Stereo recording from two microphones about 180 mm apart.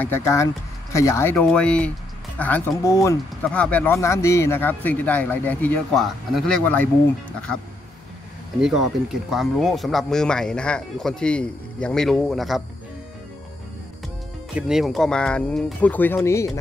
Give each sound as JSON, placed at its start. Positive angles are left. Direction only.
{"t": 0.0, "sound": "speech", "side_deg": 15}
{"t": 3.4, "sound": "speech", "side_deg": 5}
{"t": 8.5, "sound": "speech", "side_deg": -5}
{"t": 14.5, "sound": "speech", "side_deg": 0}